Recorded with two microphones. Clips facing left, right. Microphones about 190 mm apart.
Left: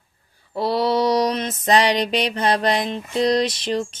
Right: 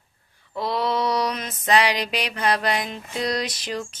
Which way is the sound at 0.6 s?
35° left (ahead or behind).